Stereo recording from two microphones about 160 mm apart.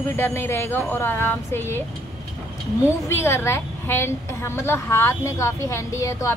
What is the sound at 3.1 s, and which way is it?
A woman's voice, 15° left (ahead or behind).